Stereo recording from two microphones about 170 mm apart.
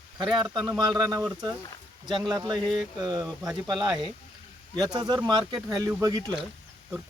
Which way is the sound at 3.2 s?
Centre (ahead or behind).